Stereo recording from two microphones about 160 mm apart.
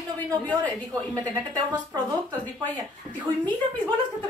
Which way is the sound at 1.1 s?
25° right (ahead or behind).